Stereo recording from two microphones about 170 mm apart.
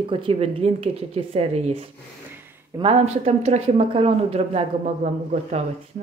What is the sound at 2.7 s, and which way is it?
Speech, 35° right (ahead or behind).